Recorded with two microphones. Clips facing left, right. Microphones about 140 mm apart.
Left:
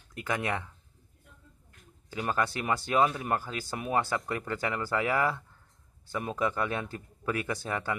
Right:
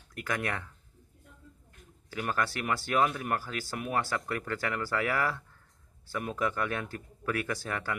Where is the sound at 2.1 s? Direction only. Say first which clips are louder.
Left 2 dB; 20° left (ahead or behind).